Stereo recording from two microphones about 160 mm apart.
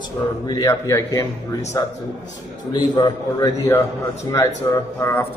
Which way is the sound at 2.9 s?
25° left (ahead or behind).